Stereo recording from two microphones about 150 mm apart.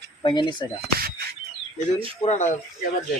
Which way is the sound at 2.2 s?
50° left (ahead or behind).